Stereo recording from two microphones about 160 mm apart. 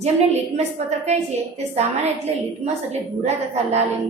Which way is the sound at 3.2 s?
45° right (ahead or behind).